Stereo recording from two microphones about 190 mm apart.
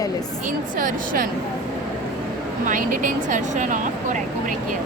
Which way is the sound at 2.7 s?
45° right (ahead or behind).